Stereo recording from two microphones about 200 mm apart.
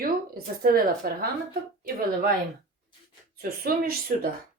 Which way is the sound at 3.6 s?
50° right (ahead or behind).